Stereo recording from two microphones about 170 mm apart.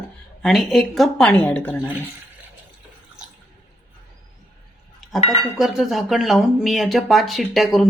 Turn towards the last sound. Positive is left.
turn(degrees=0)  # may be behind; listen again after turning